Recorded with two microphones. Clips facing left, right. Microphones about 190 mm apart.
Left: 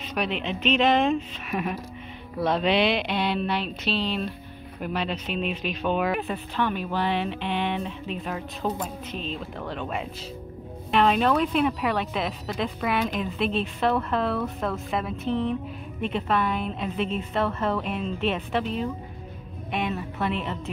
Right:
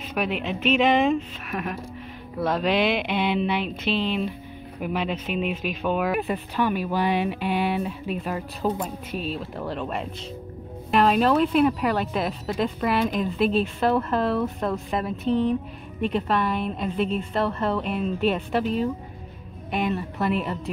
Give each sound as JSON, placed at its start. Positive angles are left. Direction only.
{"t": 0.1, "sound": "speech", "side_deg": -10}
{"t": 1.5, "sound": "speech", "side_deg": 5}